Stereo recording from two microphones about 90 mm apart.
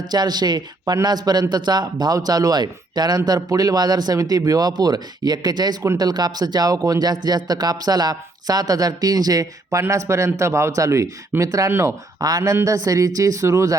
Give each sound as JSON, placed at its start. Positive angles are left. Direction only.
{"t": 0.1, "sound": "speech", "side_deg": -50}
{"t": 11.7, "sound": "speech", "side_deg": -25}
{"t": 12.2, "sound": "speech", "side_deg": -40}